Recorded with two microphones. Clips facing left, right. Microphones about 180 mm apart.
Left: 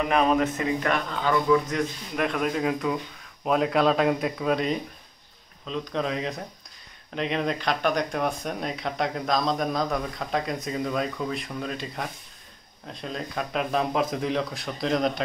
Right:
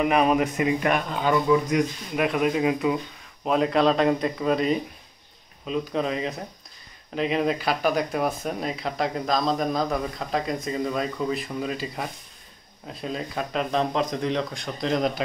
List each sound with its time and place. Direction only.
0.0 s speech: 10° right (ahead or behind)